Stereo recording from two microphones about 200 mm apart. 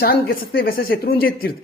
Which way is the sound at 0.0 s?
50° left (ahead or behind).